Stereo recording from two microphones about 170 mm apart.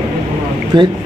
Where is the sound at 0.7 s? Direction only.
25° right (ahead or behind).